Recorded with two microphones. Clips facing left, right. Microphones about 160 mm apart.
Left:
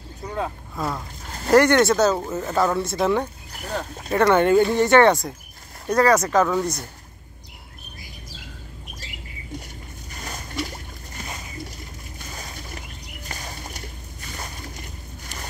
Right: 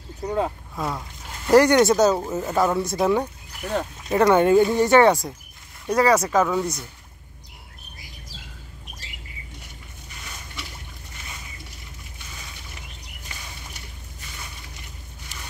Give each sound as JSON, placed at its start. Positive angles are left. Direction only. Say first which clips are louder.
{"t": 0.4, "sound": "speech", "louder": "even", "side_deg": -10}
{"t": 3.6, "sound": "speech", "louder": "right 3 dB", "side_deg": 35}
{"t": 4.1, "sound": "speech", "louder": "right 1 dB", "side_deg": -15}
{"t": 10.1, "sound": "a sound", "louder": "left 9 dB", "side_deg": 40}
{"t": 12.2, "sound": "boat", "louder": "left 7 dB", "side_deg": 40}
{"t": 13.3, "sound": "a sound", "louder": "left 6 dB", "side_deg": 40}